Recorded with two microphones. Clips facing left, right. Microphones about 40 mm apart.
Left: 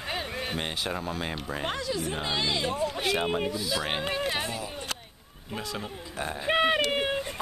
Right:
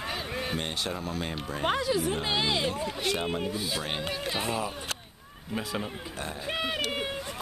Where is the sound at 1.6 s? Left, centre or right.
Centre.